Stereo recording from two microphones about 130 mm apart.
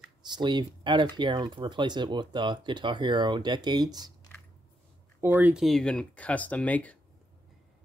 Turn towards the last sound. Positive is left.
turn(degrees=10)  # may be behind; listen again after turning